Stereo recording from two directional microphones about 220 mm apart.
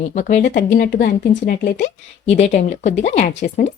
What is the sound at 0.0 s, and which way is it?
Speech, 35° left (ahead or behind).